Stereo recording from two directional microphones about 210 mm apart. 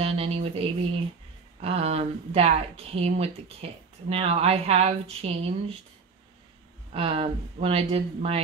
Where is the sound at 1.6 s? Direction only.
30° right (ahead or behind).